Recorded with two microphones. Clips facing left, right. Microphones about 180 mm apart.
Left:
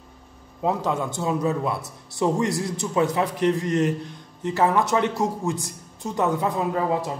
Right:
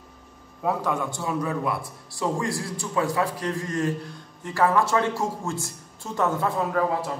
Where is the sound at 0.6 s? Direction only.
25° left (ahead or behind).